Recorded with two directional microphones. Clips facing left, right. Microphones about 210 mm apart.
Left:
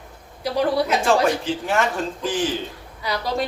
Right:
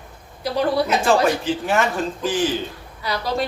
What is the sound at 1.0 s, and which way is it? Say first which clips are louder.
Speech: right 1 dB; 5° right (ahead or behind).